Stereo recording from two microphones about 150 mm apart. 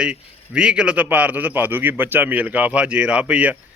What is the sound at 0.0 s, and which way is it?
A man's voice, 5° right (ahead or behind).